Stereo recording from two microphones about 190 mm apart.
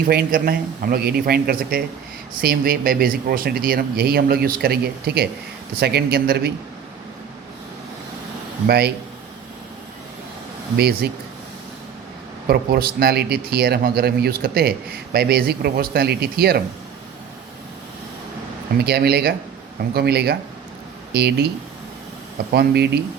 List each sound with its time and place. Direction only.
0.0 s a man's voice: 55° right (ahead or behind)
8.6 s a man's voice: 55° right (ahead or behind)
10.8 s a man's voice: 60° right (ahead or behind)
12.5 s a man's voice: 55° right (ahead or behind)
18.8 s a man's voice: 55° right (ahead or behind)
22.5 s a man's voice: 60° right (ahead or behind)